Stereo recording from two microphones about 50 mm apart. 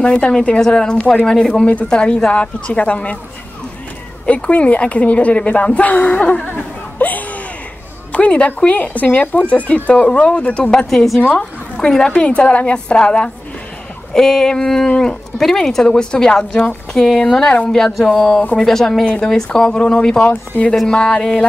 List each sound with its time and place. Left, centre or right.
0.0 s a woman's voice: centre
4.4 s a woman's voice: left
6.4 s a sound: left
8.1 s a woman's voice: left